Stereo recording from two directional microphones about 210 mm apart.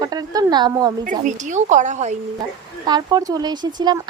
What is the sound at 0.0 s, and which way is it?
Speech, 20° right (ahead or behind).